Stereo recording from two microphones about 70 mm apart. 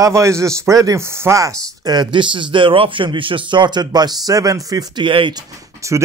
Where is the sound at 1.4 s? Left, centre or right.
Right.